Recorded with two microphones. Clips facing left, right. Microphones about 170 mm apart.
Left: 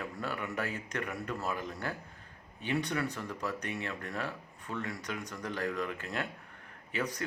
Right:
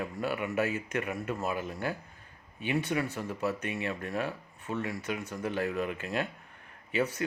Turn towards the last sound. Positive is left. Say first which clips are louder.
# right 5 dB
turn(degrees=-10)  # may be behind; listen again after turning